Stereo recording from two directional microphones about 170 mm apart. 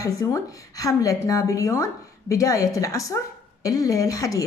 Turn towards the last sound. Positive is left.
turn(degrees=20)  # may be behind; listen again after turning